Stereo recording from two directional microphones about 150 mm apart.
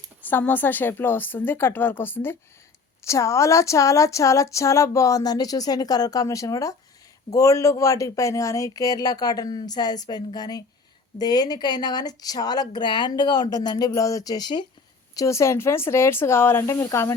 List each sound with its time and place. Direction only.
0.3 s speech: 10° left (ahead or behind)